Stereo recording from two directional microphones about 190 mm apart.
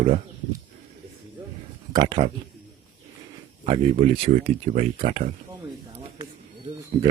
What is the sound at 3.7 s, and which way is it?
Speech, 30° right (ahead or behind).